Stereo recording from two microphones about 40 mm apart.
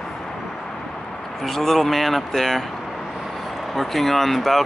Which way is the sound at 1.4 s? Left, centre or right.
Centre.